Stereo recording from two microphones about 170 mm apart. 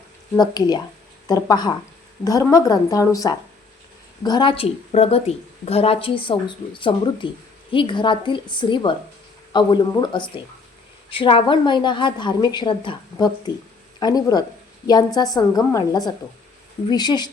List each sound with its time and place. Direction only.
0.3 s a woman's voice: 25° left (ahead or behind)